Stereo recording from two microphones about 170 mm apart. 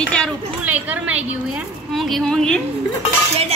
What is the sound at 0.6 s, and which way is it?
A woman's voice, 10° right (ahead or behind).